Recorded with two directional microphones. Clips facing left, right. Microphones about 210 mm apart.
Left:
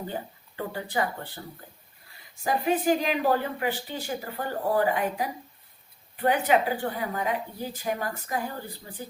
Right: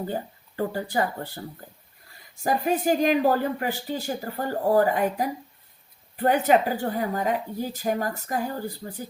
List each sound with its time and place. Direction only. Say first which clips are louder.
0.1 s a woman's voice: right 4 dB; 40° right (ahead or behind)
2.4 s a woman's voice: right 1 dB; 45° right (ahead or behind)